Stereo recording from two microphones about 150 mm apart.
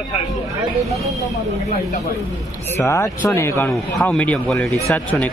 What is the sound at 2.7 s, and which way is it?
Speech, 20° left (ahead or behind).